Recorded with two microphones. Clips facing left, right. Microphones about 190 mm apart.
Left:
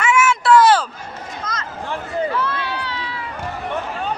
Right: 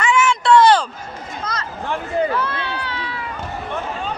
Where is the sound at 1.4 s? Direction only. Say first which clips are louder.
Right 2 dB; 35° right (ahead or behind).